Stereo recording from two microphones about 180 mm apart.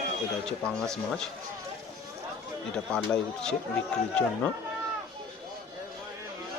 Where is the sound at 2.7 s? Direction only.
5° left (ahead or behind).